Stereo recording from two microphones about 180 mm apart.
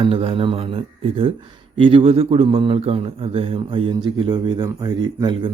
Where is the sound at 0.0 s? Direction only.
30° right (ahead or behind).